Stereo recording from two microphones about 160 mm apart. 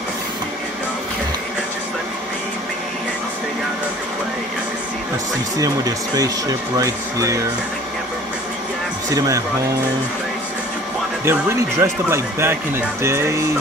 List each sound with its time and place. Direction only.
5.6 s speech: 20° right (ahead or behind)
11.2 s speech: 15° right (ahead or behind)